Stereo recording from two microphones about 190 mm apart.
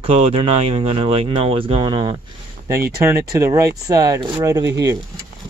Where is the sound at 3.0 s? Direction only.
15° right (ahead or behind).